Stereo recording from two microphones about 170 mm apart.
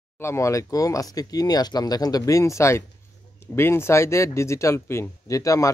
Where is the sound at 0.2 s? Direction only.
15° left (ahead or behind).